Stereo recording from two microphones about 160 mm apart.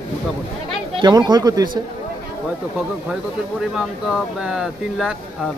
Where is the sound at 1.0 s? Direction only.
25° right (ahead or behind).